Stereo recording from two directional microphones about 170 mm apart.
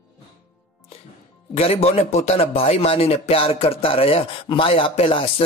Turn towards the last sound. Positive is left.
turn(degrees=30)  # may be behind; listen again after turning